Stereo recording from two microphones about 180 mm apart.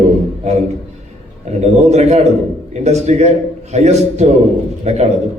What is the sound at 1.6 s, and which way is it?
A man's voice, 40° right (ahead or behind).